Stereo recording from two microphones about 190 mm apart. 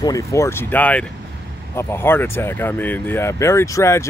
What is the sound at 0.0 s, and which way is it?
Speech, 15° left (ahead or behind).